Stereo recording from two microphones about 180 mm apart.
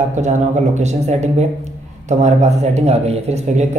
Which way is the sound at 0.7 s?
40° right (ahead or behind).